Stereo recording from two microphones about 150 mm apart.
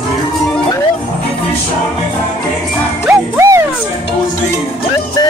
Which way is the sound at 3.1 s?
20° right (ahead or behind).